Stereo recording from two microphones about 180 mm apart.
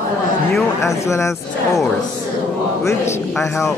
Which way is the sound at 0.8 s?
15° left (ahead or behind).